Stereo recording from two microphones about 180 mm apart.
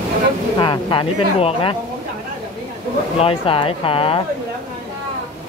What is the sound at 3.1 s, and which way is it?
Speech, 30° left (ahead or behind).